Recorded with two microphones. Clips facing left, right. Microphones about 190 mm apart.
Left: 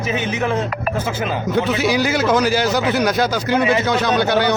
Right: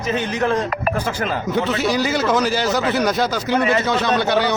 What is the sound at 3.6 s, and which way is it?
Speech, 15° left (ahead or behind).